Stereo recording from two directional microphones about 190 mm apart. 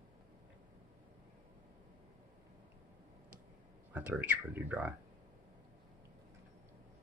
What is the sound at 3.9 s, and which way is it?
Speech, 10° right (ahead or behind).